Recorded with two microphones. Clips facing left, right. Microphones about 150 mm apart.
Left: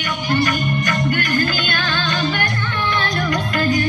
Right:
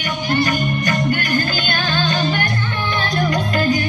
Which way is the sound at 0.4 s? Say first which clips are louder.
Right 1 dB; 30° right (ahead or behind).